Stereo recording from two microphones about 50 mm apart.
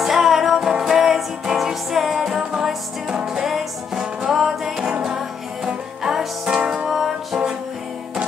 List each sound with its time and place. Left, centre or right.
0.0 s music: centre
6.0 s music: centre
6.9 s music: centre